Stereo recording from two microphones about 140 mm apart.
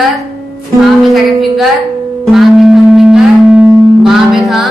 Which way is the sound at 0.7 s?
Centre (ahead or behind).